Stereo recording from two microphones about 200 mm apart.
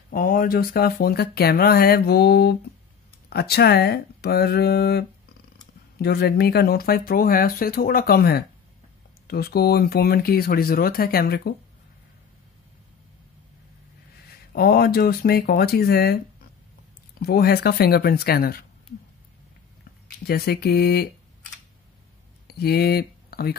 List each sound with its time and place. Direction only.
0.1 s speech: 45° left (ahead or behind)
14.5 s speech: 50° left (ahead or behind)
20.2 s speech: 50° left (ahead or behind)
22.5 s speech: 50° left (ahead or behind)